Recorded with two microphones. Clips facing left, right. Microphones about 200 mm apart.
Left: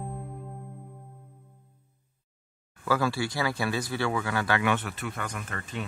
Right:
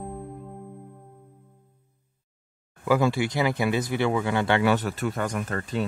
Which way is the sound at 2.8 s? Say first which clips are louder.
Right 5 dB; 20° right (ahead or behind).